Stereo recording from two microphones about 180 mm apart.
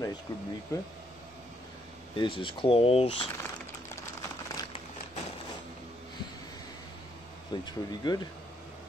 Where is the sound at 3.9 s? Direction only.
15° left (ahead or behind).